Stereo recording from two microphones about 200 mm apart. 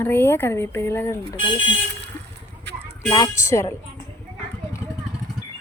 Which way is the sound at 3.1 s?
20° left (ahead or behind).